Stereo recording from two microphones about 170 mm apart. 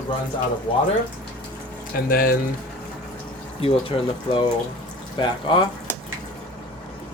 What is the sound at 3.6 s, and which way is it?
Speech, 35° left (ahead or behind).